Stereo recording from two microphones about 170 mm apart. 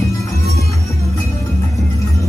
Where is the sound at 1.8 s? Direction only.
20° left (ahead or behind).